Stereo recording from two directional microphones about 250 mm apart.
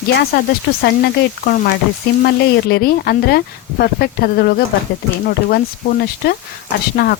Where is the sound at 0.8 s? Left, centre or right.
Left.